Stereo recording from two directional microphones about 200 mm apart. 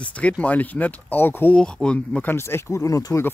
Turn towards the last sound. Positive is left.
turn(degrees=15)  # may be behind; listen again after turning